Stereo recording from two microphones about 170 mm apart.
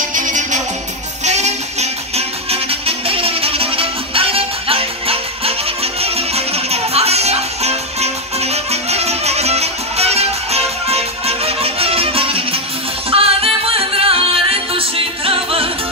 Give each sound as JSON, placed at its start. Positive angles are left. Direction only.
{"t": 0.1, "sound": "music", "side_deg": -50}